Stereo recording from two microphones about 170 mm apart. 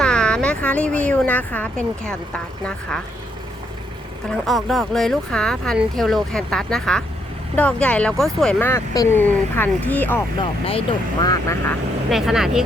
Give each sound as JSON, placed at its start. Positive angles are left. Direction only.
{"t": 0.0, "sound": "speech", "side_deg": 5}
{"t": 4.3, "sound": "speech", "side_deg": 0}
{"t": 10.7, "sound": "speech", "side_deg": 30}
{"t": 12.1, "sound": "speech", "side_deg": 0}